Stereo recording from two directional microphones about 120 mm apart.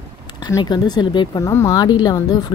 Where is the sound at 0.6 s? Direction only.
35° left (ahead or behind).